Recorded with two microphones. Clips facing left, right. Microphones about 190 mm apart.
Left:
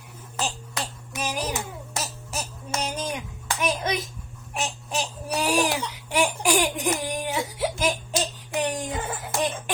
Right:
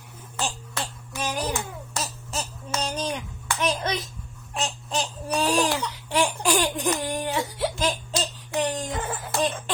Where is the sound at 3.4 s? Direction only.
10° left (ahead or behind).